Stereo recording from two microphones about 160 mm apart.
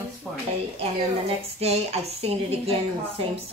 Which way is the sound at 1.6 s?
40° right (ahead or behind).